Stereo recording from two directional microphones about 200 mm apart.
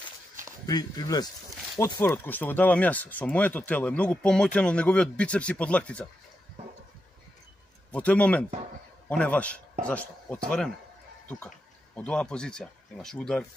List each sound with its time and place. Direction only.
0.7 s speech: 20° left (ahead or behind)
7.9 s a man's voice: 5° left (ahead or behind)